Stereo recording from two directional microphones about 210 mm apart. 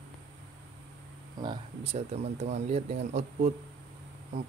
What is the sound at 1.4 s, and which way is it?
Speech, 25° right (ahead or behind).